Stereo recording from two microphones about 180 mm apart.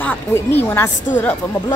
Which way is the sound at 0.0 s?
10° left (ahead or behind).